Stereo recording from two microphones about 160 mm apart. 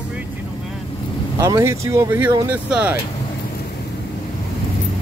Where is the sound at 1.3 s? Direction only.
20° right (ahead or behind).